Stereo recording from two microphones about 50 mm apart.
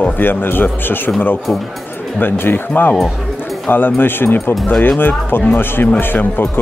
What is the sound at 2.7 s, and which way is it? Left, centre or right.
A man's voice, left.